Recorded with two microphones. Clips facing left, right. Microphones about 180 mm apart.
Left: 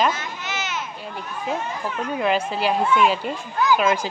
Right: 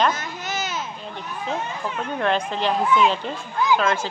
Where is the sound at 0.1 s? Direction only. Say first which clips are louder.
Right 1 dB; 35° right (ahead or behind).